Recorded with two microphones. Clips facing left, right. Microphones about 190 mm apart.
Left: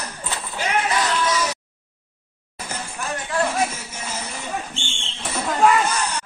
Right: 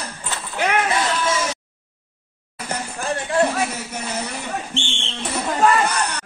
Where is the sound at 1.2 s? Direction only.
25° right (ahead or behind).